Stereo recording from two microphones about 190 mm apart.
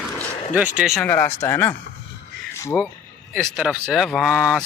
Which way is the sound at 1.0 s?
15° left (ahead or behind).